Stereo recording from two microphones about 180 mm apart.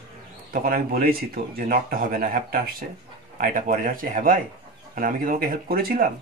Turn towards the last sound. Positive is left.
turn(degrees=-55)  # may be behind; listen again after turning